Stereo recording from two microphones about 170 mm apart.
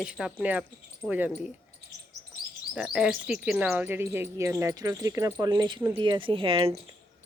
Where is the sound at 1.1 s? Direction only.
10° right (ahead or behind).